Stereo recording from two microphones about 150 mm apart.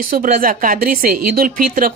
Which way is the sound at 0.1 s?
65° right (ahead or behind).